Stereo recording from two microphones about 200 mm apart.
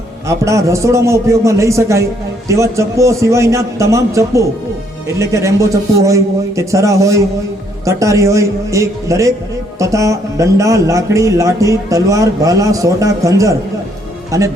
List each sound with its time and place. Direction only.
0.3 s a man's voice: 15° right (ahead or behind)